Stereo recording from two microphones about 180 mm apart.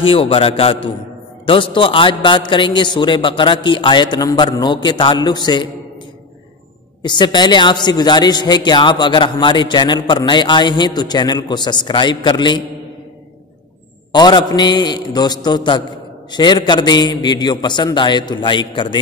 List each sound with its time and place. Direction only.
0.0 s a man's voice: 30° left (ahead or behind)
7.0 s a man's voice: 25° left (ahead or behind)
14.1 s a man's voice: 25° left (ahead or behind)